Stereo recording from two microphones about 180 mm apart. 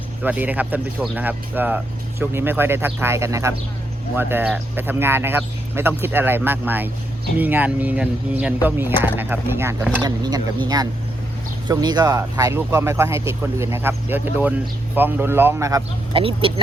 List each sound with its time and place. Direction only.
0.2 s speech: 10° right (ahead or behind)
11.7 s speech: 20° right (ahead or behind)
16.1 s speech: 30° right (ahead or behind)